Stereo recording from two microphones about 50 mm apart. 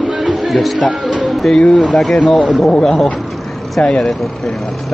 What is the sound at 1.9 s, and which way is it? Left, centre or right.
A man's voice, centre.